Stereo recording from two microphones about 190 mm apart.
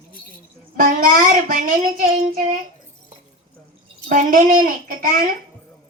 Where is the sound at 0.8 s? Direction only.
45° right (ahead or behind).